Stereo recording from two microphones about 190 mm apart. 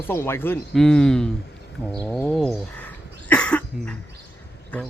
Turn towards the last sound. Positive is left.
turn(degrees=5)  # may be behind; listen again after turning